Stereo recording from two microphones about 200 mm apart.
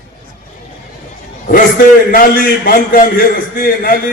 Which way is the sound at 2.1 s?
45° left (ahead or behind).